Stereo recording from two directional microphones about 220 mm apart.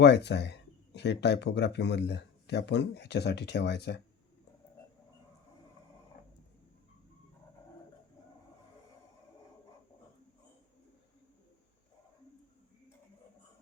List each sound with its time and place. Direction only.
0.0 s speech: 50° left (ahead or behind)